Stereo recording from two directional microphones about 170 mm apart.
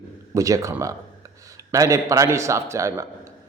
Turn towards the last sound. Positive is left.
turn(degrees=-15)  # may be behind; listen again after turning